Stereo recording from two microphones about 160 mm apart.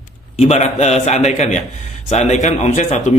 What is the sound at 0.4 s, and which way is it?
A man's voice, 45° left (ahead or behind).